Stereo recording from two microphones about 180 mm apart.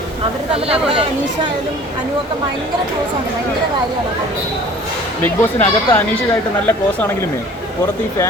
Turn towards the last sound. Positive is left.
turn(degrees=10)  # may be behind; listen again after turning